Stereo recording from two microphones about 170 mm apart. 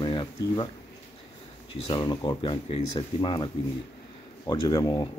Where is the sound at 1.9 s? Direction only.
25° left (ahead or behind).